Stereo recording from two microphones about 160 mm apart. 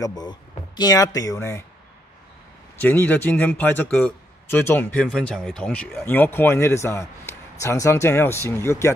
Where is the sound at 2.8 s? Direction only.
10° left (ahead or behind).